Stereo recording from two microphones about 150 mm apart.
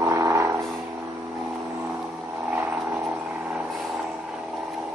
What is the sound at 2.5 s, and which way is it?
Vehicle, 10° right (ahead or behind).